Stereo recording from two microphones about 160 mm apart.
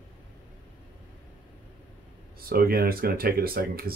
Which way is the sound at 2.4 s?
70° right (ahead or behind).